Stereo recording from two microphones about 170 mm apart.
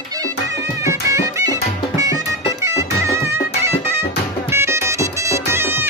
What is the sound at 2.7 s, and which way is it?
Music, 15° right (ahead or behind).